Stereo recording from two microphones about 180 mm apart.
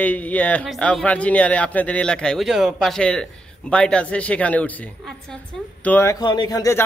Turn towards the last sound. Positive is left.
turn(degrees=20)  # may be behind; listen again after turning